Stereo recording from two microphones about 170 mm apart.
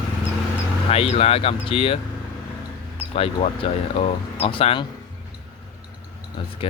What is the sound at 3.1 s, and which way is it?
Speech, 35° left (ahead or behind).